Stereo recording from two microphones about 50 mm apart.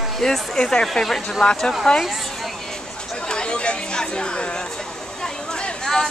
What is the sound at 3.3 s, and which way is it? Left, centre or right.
Chatter, centre.